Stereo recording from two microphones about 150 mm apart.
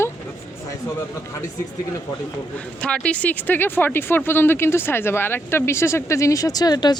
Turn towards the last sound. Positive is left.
turn(degrees=25)  # may be behind; listen again after turning